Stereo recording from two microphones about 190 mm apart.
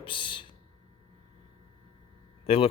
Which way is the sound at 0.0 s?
25° left (ahead or behind).